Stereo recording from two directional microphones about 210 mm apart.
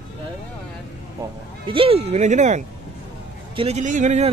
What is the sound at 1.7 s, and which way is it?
Speech, 25° right (ahead or behind).